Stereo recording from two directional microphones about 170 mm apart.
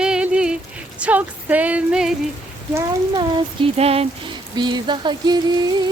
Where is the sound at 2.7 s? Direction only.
25° right (ahead or behind).